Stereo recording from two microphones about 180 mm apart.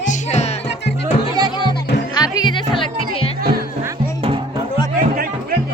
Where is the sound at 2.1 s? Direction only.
20° left (ahead or behind).